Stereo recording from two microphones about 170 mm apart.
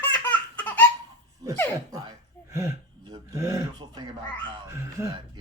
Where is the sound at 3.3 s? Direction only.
20° right (ahead or behind).